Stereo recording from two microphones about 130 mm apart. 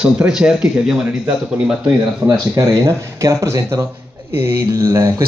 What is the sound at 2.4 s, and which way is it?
Speech, 25° right (ahead or behind).